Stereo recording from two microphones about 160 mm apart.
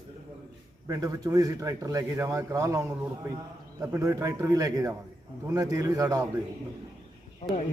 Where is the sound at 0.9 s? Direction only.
20° right (ahead or behind).